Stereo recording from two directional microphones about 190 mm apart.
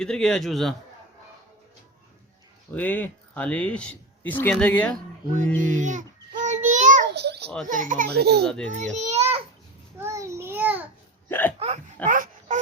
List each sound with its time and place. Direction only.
0.0 s a man's voice: 5° left (ahead or behind)
2.7 s speech: 10° left (ahead or behind)
5.7 s child singing: 40° right (ahead or behind)
7.1 s children playing: 60° right (ahead or behind)
7.7 s a child's voice: 45° right (ahead or behind)
8.4 s a man's voice: 5° left (ahead or behind)
8.7 s a child's voice: 40° right (ahead or behind)
10.0 s child singing: 15° right (ahead or behind)
11.3 s hiccup: 10° left (ahead or behind)
12.0 s wail: 45° right (ahead or behind)